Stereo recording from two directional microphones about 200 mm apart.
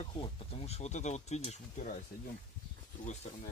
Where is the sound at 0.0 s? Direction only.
25° left (ahead or behind).